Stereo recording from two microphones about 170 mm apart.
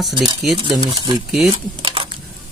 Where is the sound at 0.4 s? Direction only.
Centre (ahead or behind).